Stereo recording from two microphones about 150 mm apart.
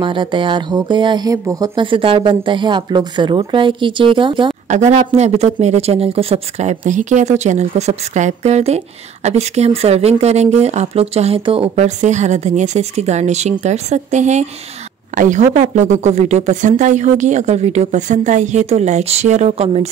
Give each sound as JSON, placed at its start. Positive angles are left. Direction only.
{"t": 0.0, "sound": "speech", "side_deg": -35}
{"t": 4.6, "sound": "speech", "side_deg": -50}